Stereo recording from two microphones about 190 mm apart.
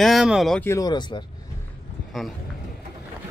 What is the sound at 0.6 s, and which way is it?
Speech, 15° left (ahead or behind).